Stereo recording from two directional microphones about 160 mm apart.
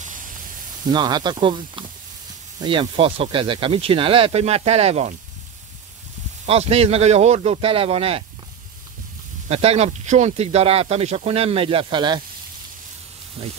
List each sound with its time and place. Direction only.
0.0 s spray: 55° right (ahead or behind)
0.8 s speech: 25° right (ahead or behind)
6.4 s speech: 40° right (ahead or behind)
9.5 s speech: 40° right (ahead or behind)
13.4 s speech: 35° right (ahead or behind)